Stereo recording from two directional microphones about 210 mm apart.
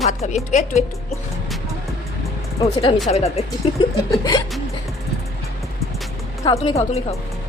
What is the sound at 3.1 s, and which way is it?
Speech, 30° left (ahead or behind).